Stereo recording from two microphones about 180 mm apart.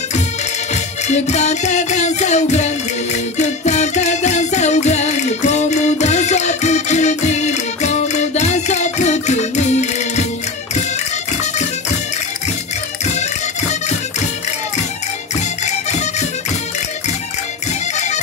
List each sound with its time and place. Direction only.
1.0 s music: 40° left (ahead or behind)
13.0 s music: 40° left (ahead or behind)
15.6 s music: 40° left (ahead or behind)
17.9 s music: 40° left (ahead or behind)